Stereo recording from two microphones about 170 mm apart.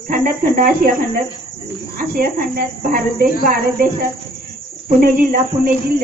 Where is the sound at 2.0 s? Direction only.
55° right (ahead or behind).